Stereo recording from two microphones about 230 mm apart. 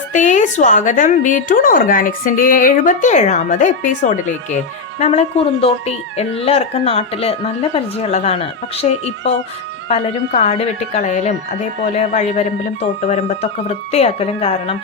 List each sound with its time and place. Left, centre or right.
0.1 s a woman's voice: left